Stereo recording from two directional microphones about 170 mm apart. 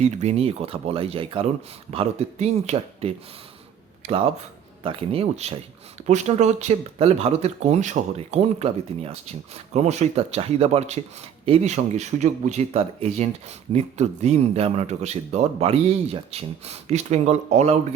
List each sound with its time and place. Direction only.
0.0 s speech: 40° right (ahead or behind)
4.8 s speech: 35° right (ahead or behind)